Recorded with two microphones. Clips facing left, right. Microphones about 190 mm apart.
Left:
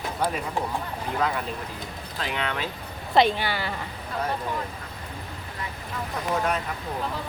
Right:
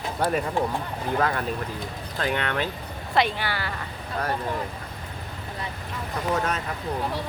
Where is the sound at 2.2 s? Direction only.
50° right (ahead or behind).